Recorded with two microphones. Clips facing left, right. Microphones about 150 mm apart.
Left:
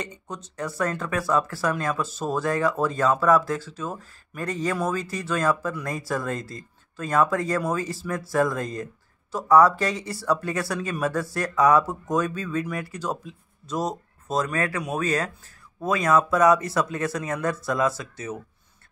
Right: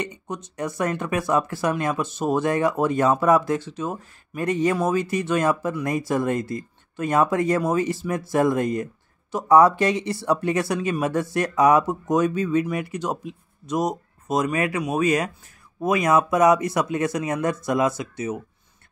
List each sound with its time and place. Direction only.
0.3 s speech: 20° right (ahead or behind)